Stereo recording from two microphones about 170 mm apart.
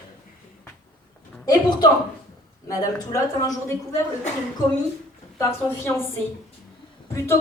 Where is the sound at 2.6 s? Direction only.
20° left (ahead or behind).